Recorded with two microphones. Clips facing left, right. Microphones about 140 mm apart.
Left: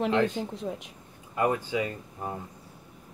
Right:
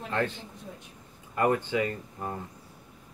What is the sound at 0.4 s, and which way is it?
Speech, 90° left.